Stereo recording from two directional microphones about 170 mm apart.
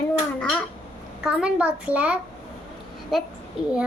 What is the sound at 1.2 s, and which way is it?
A child's voice, 5° right (ahead or behind).